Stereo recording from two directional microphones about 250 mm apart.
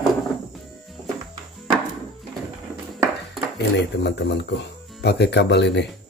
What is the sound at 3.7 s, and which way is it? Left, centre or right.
Speech, left.